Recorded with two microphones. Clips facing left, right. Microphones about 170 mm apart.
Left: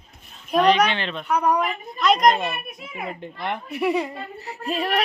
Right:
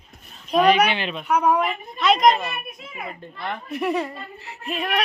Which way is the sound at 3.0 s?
20° left (ahead or behind).